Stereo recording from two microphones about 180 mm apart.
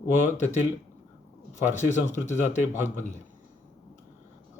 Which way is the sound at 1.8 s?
40° left (ahead or behind).